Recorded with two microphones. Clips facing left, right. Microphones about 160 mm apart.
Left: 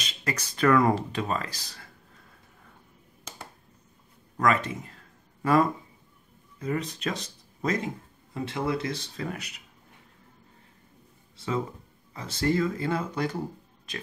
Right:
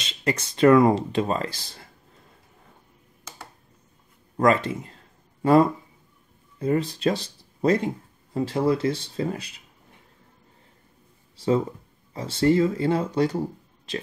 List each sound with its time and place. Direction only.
0.0 s speech: 25° right (ahead or behind)
4.4 s speech: 30° right (ahead or behind)
11.3 s speech: 35° right (ahead or behind)